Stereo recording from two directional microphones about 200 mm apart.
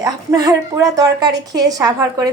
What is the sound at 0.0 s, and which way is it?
A woman's voice, 15° right (ahead or behind).